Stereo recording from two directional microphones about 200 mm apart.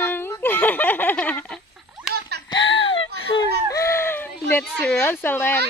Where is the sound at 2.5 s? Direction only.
70° left (ahead or behind).